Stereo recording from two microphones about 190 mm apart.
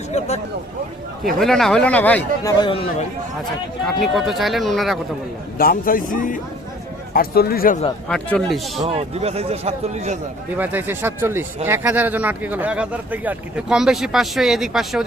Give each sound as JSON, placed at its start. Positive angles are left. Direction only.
{"t": 1.4, "sound": "a man's voice", "side_deg": 0}
{"t": 3.8, "sound": "speech", "side_deg": 0}
{"t": 5.5, "sound": "a man's voice", "side_deg": 50}
{"t": 8.0, "sound": "speech", "side_deg": 5}
{"t": 8.8, "sound": "a man's voice", "side_deg": -35}
{"t": 10.6, "sound": "speech", "side_deg": -10}